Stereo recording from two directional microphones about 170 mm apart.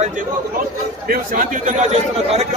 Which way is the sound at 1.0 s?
50° right (ahead or behind).